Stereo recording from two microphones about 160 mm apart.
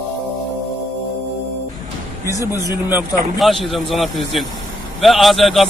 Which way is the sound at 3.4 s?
Centre (ahead or behind).